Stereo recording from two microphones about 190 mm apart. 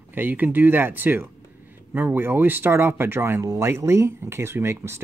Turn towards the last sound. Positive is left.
turn(degrees=-15)  # may be behind; listen again after turning